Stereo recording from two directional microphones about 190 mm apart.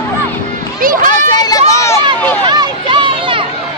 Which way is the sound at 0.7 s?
50° right (ahead or behind).